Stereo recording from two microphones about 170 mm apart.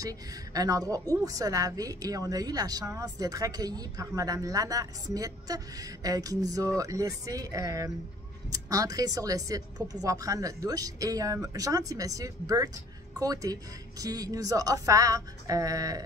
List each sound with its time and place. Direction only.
0.0 s a woman's voice: 20° right (ahead or behind)